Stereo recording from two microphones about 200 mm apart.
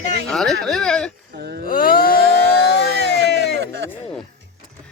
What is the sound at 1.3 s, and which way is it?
Speech, 55° right (ahead or behind).